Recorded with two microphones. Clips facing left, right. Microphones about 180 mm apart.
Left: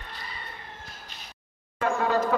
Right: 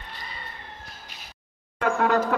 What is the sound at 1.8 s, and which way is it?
Speech, 75° right (ahead or behind).